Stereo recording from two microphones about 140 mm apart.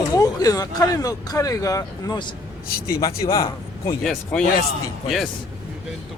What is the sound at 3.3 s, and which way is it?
Speech, 25° left (ahead or behind).